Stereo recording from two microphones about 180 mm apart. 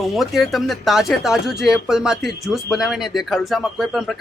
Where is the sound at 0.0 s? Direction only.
Centre (ahead or behind).